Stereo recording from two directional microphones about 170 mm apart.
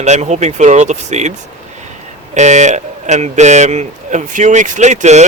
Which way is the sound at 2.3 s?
45° right (ahead or behind).